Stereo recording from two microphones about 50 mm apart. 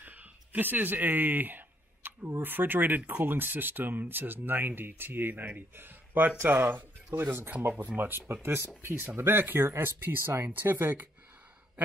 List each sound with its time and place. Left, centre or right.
0.0 s speech: right